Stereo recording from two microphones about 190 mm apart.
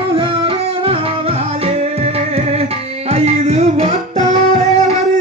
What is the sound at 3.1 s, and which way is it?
Music, 35° right (ahead or behind).